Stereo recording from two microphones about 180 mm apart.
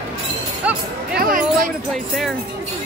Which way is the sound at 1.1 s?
50° right (ahead or behind).